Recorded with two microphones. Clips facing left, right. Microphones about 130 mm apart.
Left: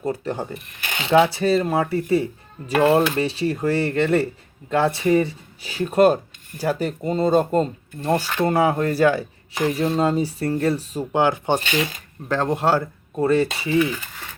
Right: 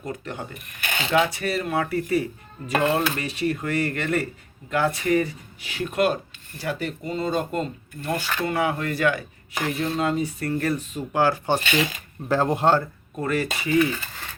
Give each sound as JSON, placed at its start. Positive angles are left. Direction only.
{"t": 0.0, "sound": "speech", "side_deg": 30}
{"t": 8.4, "sound": "speech", "side_deg": 35}
{"t": 11.1, "sound": "speech", "side_deg": 20}
{"t": 11.9, "sound": "speech", "side_deg": -5}
{"t": 13.1, "sound": "speech", "side_deg": 30}